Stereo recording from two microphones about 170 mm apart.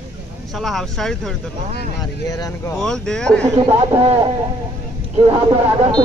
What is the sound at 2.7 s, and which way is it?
Speech, 5° left (ahead or behind).